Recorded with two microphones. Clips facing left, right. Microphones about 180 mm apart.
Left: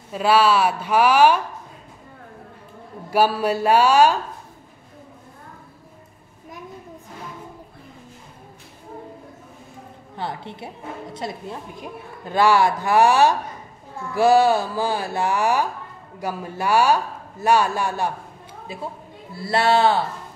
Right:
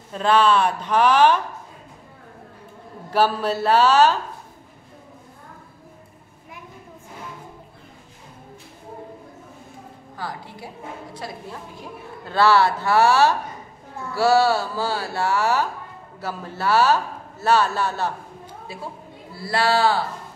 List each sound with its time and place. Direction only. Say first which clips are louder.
0.1 s a woman's voice: left 1 dB; 10° left (ahead or behind)
3.1 s a woman's voice: left 1 dB; 10° left (ahead or behind)
10.1 s a woman's voice: left 3 dB; 25° left (ahead or behind)